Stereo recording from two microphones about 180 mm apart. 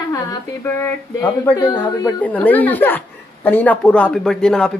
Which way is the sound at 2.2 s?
10° left (ahead or behind).